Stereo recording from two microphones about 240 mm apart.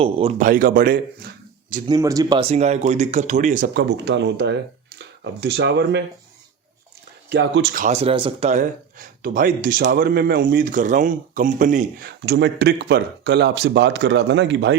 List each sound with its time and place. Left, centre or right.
0.0 s speech: right
1.9 s speech: centre; by 6.0 s right
7.3 s speech: right